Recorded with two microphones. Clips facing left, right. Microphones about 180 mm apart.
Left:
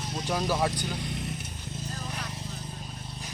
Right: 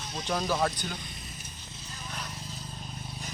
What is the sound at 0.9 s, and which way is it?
Vehicle, 70° left (ahead or behind).